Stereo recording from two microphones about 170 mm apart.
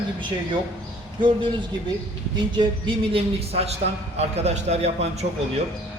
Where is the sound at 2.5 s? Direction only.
30° right (ahead or behind).